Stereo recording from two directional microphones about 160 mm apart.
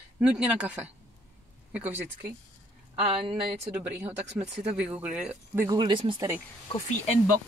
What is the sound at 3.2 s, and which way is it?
Speech, 30° right (ahead or behind).